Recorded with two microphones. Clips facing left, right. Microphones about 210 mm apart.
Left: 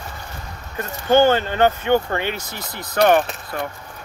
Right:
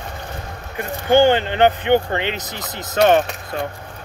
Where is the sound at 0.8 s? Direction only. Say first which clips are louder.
Right 1 dB; 15° right (ahead or behind).